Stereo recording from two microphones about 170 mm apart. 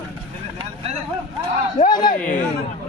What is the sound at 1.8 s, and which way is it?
Speech, 50° left (ahead or behind).